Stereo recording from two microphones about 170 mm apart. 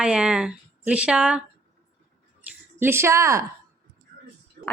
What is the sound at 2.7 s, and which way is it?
Speech, 15° right (ahead or behind).